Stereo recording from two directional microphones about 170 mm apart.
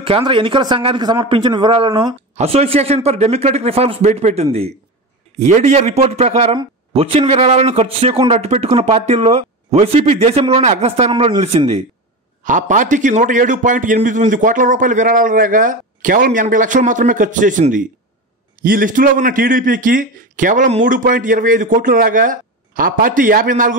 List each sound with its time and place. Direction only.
0.0 s a man's voice: 30° right (ahead or behind)
12.4 s a man's voice: 50° right (ahead or behind)